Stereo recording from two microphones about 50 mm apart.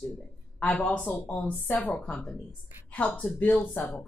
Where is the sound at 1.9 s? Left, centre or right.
Centre.